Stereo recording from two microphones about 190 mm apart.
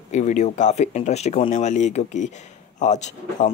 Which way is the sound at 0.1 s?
40° left (ahead or behind).